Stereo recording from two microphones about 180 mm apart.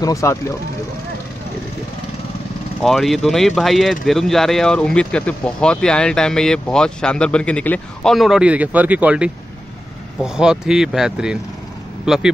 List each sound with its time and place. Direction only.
0.0 s speech: 15° left (ahead or behind)
2.8 s speech: centre (ahead or behind)